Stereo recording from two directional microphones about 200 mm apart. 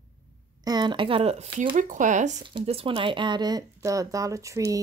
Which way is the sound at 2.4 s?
25° right (ahead or behind).